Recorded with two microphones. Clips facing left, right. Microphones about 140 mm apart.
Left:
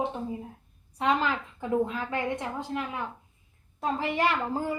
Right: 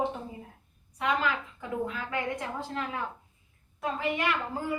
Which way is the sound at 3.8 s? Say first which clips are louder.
Left 3 dB; 30° left (ahead or behind).